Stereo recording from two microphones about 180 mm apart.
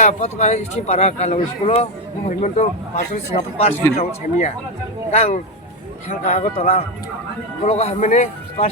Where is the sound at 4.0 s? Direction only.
35° left (ahead or behind).